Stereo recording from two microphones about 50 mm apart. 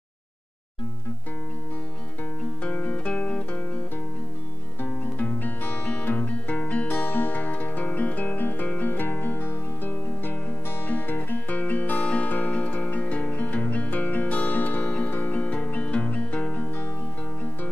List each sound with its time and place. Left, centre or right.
2.6 s music: left
4.8 s music: left
7.0 s music: left
12.0 s music: left
12.3 s music: left